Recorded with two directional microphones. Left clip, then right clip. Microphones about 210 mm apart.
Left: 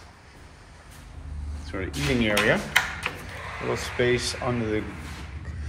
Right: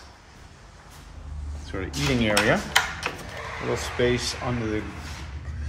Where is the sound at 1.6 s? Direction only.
15° right (ahead or behind).